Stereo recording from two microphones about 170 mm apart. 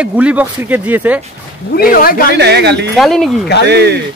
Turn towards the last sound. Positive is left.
turn(degrees=-80)